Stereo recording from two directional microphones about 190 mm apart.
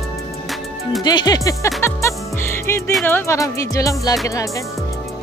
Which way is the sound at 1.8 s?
15° left (ahead or behind).